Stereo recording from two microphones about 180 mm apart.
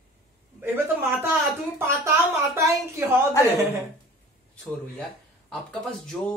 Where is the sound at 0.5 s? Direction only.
10° right (ahead or behind).